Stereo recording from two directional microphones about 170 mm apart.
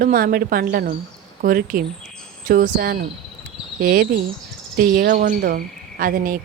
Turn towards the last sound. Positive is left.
turn(degrees=-55)  # may be behind; listen again after turning